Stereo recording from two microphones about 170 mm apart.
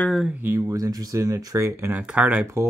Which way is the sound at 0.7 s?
20° right (ahead or behind).